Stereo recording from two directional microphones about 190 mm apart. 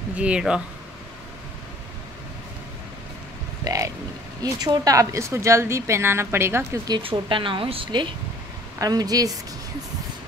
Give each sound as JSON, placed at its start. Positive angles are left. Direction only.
{"t": 0.1, "sound": "speech", "side_deg": -5}
{"t": 3.6, "sound": "grunt", "side_deg": -15}
{"t": 4.4, "sound": "a woman's voice", "side_deg": -20}
{"t": 7.0, "sound": "speech", "side_deg": -25}